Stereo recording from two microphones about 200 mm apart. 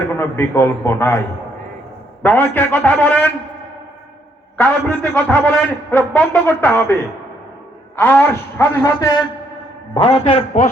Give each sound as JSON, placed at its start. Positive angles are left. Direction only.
{"t": 0.2, "sound": "a man's voice", "side_deg": 10}
{"t": 2.2, "sound": "a man's voice", "side_deg": 10}
{"t": 4.5, "sound": "a man's voice", "side_deg": 5}
{"t": 7.9, "sound": "a man's voice", "side_deg": 10}
{"t": 9.9, "sound": "a man's voice", "side_deg": 30}